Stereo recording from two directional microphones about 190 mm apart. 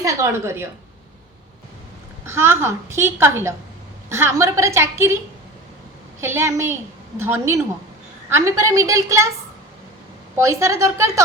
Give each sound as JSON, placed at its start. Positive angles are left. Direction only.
{"t": 0.0, "sound": "a woman's voice", "side_deg": -15}
{"t": 2.2, "sound": "a woman's voice", "side_deg": -15}
{"t": 10.3, "sound": "a woman's voice", "side_deg": -15}